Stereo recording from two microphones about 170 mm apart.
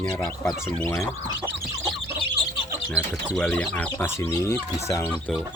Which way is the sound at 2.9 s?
5° left (ahead or behind).